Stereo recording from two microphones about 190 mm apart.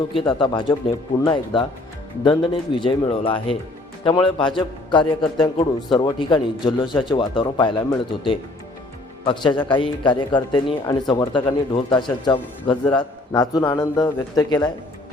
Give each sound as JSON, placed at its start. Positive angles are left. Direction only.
{"t": 0.2, "sound": "a man's voice", "side_deg": 25}
{"t": 9.2, "sound": "a man's voice", "side_deg": 25}